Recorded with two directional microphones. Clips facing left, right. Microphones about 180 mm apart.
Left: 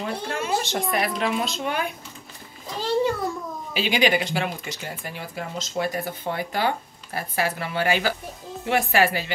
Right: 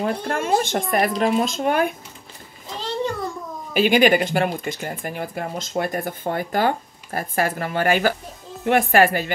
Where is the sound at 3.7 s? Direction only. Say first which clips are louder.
Right 6 dB; 50° right (ahead or behind).